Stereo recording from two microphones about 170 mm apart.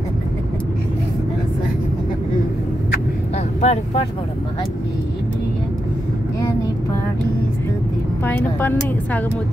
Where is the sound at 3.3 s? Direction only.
40° left (ahead or behind).